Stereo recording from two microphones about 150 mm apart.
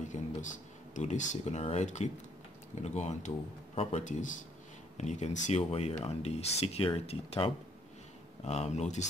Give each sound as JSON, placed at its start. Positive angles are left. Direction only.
{"t": 0.0, "sound": "speech", "side_deg": 55}